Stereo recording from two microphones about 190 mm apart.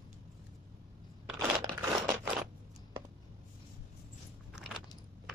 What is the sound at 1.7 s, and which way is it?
Crumpling, 15° right (ahead or behind).